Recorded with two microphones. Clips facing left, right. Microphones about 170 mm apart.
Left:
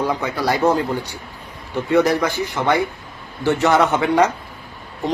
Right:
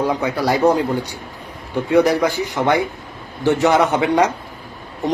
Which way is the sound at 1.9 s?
10° right (ahead or behind).